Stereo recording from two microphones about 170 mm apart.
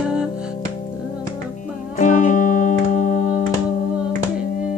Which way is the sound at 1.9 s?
45° left (ahead or behind).